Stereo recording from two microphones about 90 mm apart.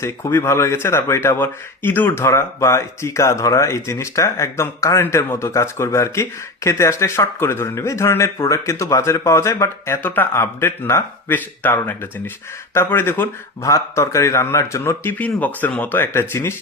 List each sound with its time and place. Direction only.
0.0 s speech: 30° left (ahead or behind)
15.2 s speech: 20° left (ahead or behind)